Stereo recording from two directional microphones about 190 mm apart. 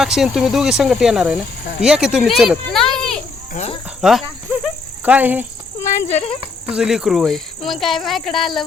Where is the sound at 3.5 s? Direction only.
35° left (ahead or behind).